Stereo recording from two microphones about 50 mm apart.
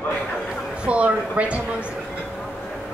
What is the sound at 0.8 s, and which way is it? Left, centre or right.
Speech, right.